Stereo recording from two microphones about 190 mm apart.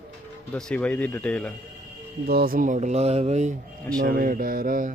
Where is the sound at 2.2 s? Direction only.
50° right (ahead or behind); by 3.5 s 35° right (ahead or behind).